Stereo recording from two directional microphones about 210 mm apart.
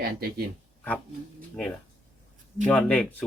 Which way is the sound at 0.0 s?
45° right (ahead or behind).